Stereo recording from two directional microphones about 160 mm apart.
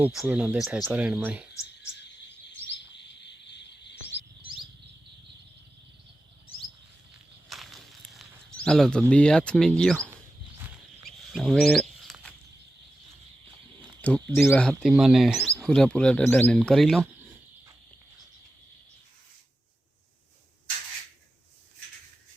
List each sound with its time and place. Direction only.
0.0 s speech: 5° right (ahead or behind)
2.7 s bird: 90° left
7.5 s walk: centre (ahead or behind)
11.3 s a sound: centre (ahead or behind)
14.0 s speech: 10° left (ahead or behind)